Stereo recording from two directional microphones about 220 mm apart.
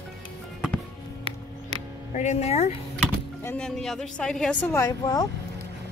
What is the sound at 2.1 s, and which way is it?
Speech, 30° left (ahead or behind).